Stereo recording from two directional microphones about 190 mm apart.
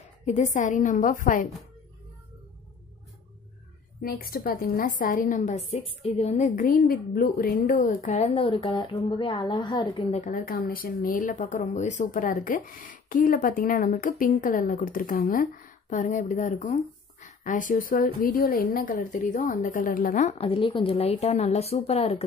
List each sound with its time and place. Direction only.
0.2 s speech: 40° left (ahead or behind)
4.0 s a woman's voice: 50° left (ahead or behind); by 10.2 s 25° left (ahead or behind)
10.2 s a woman's voice: 45° left (ahead or behind); by 22.2 s 30° left (ahead or behind)